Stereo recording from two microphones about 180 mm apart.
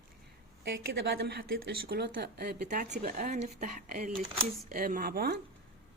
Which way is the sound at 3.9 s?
55° right (ahead or behind).